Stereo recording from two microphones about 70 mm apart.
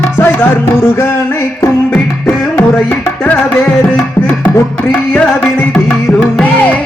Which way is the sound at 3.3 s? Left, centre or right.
Left.